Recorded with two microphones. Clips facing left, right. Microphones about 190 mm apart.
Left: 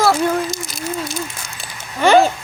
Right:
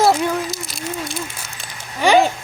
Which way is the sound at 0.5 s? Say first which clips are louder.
Left 2 dB; centre (ahead or behind).